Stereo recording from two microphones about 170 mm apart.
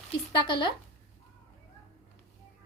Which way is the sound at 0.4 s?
30° left (ahead or behind).